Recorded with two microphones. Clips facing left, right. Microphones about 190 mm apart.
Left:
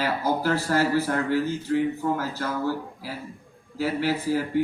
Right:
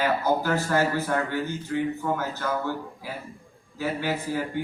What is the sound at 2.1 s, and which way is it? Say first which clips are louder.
Speech: even; 35° left (ahead or behind).